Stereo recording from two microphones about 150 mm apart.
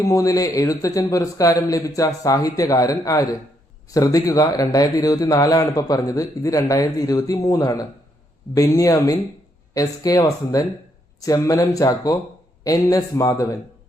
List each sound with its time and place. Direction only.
0.0 s a man's voice: 20° left (ahead or behind)